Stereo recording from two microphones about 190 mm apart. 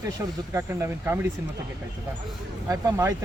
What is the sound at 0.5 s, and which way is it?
Speech, 15° right (ahead or behind).